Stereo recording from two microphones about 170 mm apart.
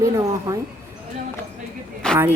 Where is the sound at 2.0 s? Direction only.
5° left (ahead or behind).